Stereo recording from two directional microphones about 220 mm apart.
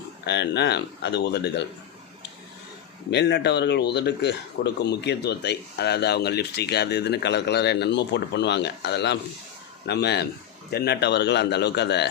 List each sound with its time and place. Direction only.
0.3 s speech: 50° left (ahead or behind)
3.1 s speech: 50° left (ahead or behind)